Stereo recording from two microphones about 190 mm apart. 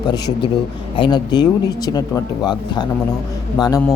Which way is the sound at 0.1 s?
20° left (ahead or behind).